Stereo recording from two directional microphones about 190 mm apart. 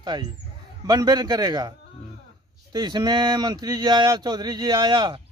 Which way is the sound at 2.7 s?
20° right (ahead or behind).